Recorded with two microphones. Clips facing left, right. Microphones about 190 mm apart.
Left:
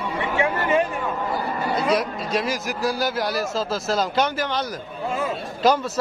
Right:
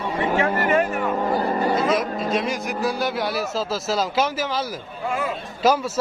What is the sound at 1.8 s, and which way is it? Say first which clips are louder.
Speech: right 1 dB; centre (ahead or behind).